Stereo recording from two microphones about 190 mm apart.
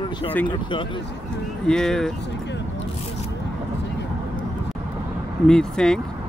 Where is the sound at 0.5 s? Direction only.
25° left (ahead or behind).